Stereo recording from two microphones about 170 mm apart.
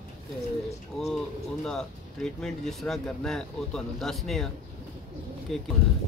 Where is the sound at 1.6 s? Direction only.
5° left (ahead or behind).